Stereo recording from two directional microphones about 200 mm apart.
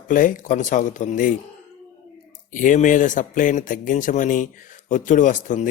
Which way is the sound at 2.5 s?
40° left (ahead or behind).